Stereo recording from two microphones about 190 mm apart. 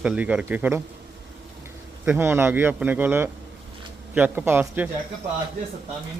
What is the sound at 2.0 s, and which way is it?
A man's voice, 10° right (ahead or behind).